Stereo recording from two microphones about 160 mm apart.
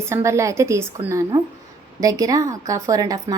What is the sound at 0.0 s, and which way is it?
A woman's voice, 15° right (ahead or behind).